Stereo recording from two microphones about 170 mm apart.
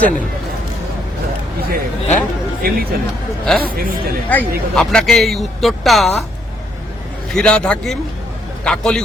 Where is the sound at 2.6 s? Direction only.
60° right (ahead or behind).